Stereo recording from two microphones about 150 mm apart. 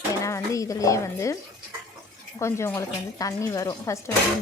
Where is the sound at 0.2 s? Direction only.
20° left (ahead or behind).